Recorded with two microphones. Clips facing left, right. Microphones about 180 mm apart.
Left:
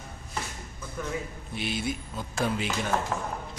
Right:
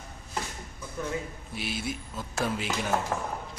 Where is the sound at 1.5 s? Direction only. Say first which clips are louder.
Left 3 dB; 5° right (ahead or behind).